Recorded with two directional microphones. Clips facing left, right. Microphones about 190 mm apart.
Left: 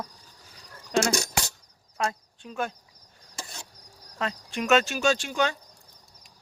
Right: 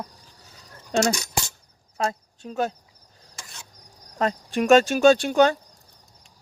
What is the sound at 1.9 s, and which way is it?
Speech, 35° right (ahead or behind).